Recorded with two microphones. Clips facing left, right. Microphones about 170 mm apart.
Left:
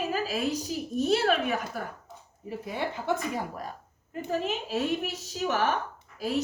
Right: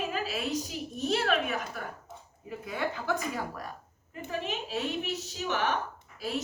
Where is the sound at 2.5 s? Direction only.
25° left (ahead or behind).